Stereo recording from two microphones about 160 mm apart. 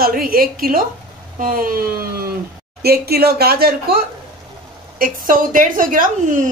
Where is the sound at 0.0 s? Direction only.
65° right (ahead or behind).